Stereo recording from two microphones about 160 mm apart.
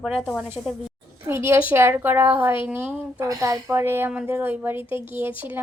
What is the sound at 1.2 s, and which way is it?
A woman's voice, 15° right (ahead or behind).